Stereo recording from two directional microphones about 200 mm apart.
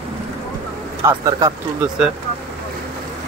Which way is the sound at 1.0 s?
20° right (ahead or behind).